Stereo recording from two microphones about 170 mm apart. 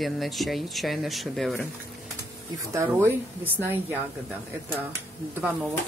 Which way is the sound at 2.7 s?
15° right (ahead or behind).